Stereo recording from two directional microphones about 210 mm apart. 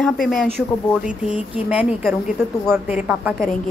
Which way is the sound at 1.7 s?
5° right (ahead or behind).